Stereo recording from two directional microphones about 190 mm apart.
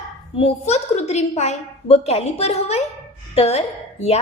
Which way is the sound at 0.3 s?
30° left (ahead or behind).